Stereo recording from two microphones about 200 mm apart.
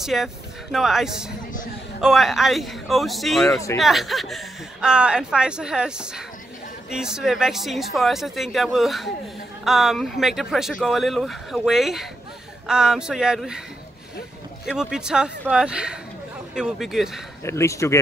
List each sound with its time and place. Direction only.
0.0 s speech: centre (ahead or behind)
3.4 s speech: 15° left (ahead or behind)
3.8 s speech: centre (ahead or behind)
14.8 s speech: 5° right (ahead or behind)
17.4 s speech: 15° left (ahead or behind)